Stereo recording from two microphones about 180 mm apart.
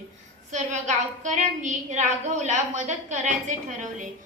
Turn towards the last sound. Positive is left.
turn(degrees=-45)  # may be behind; listen again after turning